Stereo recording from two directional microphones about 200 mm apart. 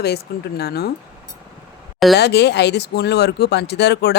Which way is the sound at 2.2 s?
55° left (ahead or behind).